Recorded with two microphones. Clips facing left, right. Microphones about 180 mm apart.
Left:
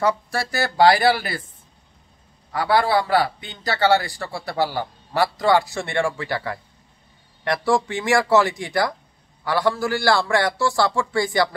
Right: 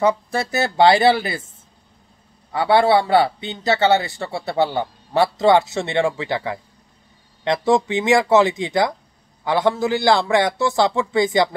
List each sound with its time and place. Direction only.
0.0 s a man's voice: 20° right (ahead or behind)
2.5 s a man's voice: 25° right (ahead or behind)